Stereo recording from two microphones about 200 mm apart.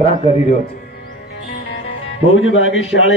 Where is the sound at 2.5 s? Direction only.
75° left (ahead or behind).